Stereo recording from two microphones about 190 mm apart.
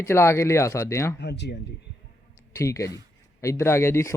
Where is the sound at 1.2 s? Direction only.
65° left (ahead or behind).